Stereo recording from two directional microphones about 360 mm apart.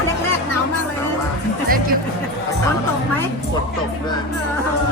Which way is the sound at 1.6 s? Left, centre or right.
Right.